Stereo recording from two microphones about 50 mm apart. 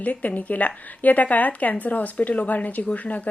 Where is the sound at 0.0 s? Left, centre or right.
Left.